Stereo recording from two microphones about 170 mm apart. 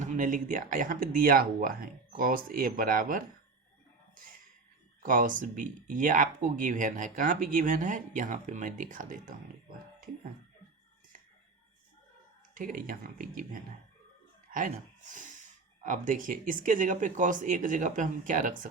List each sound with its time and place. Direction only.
0.0 s speech: 50° right (ahead or behind)
4.1 s a sound: 55° right (ahead or behind)
5.0 s speech: 55° right (ahead or behind)
12.5 s speech: 55° right (ahead or behind)